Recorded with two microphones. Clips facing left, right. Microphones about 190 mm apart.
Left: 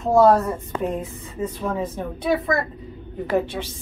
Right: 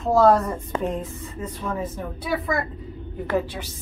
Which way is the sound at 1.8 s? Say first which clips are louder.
Left 4 dB; 20° left (ahead or behind).